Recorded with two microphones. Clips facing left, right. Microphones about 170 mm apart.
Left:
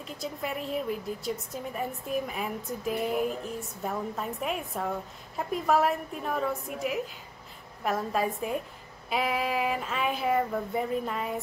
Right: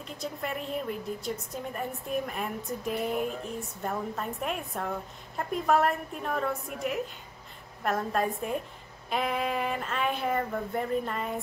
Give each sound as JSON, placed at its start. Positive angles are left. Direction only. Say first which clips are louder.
{"t": 0.0, "sound": "a woman's voice", "louder": "left 1 dB", "side_deg": 0}